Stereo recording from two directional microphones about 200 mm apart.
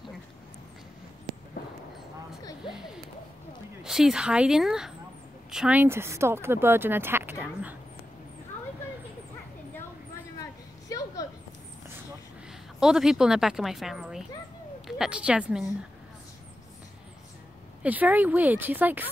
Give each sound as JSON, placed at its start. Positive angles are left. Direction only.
{"t": 3.8, "sound": "speech", "side_deg": 0}
{"t": 10.9, "sound": "a sound", "side_deg": 15}
{"t": 12.8, "sound": "a woman's voice", "side_deg": -5}
{"t": 17.8, "sound": "speech", "side_deg": -10}